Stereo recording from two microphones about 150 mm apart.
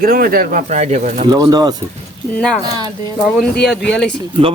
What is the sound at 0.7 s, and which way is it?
Speech, 50° right (ahead or behind).